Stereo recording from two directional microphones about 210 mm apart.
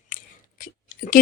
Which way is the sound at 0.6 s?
40° left (ahead or behind).